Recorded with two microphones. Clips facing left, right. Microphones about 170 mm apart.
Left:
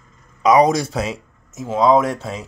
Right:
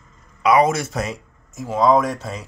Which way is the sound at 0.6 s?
35° left (ahead or behind).